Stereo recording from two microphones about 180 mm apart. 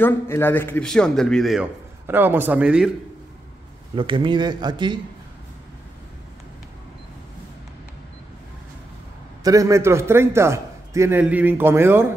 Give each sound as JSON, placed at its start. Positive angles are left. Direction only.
{"t": 0.0, "sound": "a man's voice", "side_deg": 10}
{"t": 2.0, "sound": "a man's voice", "side_deg": -10}
{"t": 3.9, "sound": "speech", "side_deg": -30}
{"t": 9.4, "sound": "a man's voice", "side_deg": -20}